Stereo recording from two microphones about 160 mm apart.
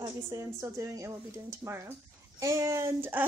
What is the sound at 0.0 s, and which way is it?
A woman's voice, 20° right (ahead or behind).